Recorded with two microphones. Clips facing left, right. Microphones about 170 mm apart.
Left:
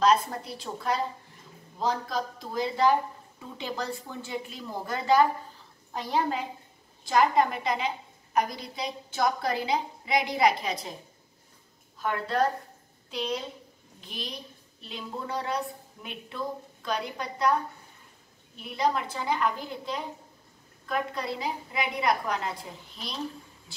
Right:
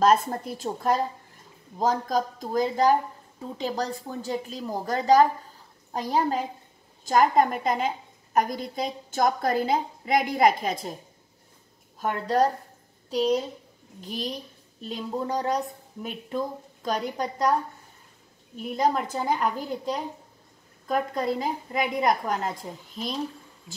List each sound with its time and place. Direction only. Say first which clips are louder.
0.0 s a woman's voice: right 3 dB; 50° right (ahead or behind)
12.0 s a woman's voice: right 3 dB; 40° right (ahead or behind)
18.6 s a woman's voice: right 3 dB; 45° right (ahead or behind)